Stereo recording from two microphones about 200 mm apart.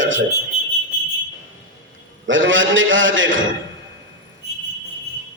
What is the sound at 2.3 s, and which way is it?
A man's voice, 70° right (ahead or behind).